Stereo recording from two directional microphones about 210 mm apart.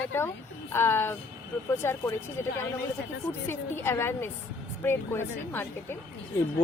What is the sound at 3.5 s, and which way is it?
Speech, 10° left (ahead or behind).